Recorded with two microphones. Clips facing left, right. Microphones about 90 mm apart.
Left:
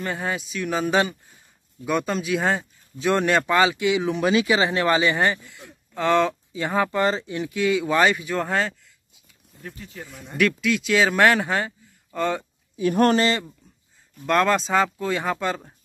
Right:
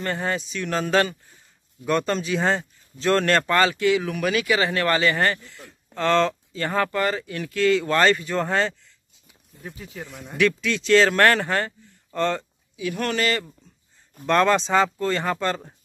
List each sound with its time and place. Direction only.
0.0 s speech: 5° left (ahead or behind)
12.7 s speech: 45° left (ahead or behind)
13.2 s speech: 20° left (ahead or behind)
14.2 s speech: centre (ahead or behind)